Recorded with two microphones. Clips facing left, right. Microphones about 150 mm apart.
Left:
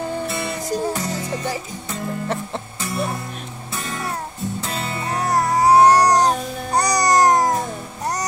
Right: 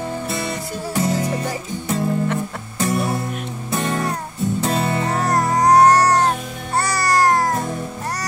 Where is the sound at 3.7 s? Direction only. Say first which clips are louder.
Right 7 dB; 45° right (ahead or behind).